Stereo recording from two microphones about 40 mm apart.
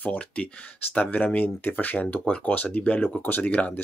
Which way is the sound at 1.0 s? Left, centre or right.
Left.